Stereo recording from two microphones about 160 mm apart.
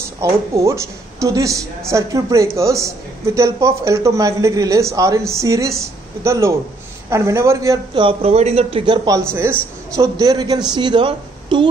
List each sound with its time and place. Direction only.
0.2 s a woman's voice: 20° right (ahead or behind)
9.3 s a woman's voice: 15° right (ahead or behind); by 11.7 s 30° right (ahead or behind)